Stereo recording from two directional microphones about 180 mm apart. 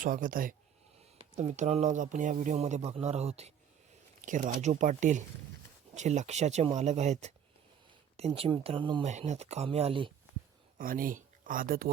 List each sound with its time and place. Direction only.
0.0 s speech: 50° right (ahead or behind)
1.4 s speech: 40° right (ahead or behind)
8.4 s speech: 30° right (ahead or behind)
9.0 s speech: 40° right (ahead or behind)
10.8 s speech: 50° right (ahead or behind)